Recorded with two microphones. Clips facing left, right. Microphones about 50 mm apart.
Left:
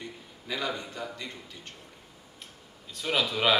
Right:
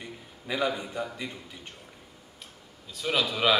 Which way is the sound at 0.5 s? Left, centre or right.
Centre.